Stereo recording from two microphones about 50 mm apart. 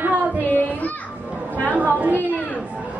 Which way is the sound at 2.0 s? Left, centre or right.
Right.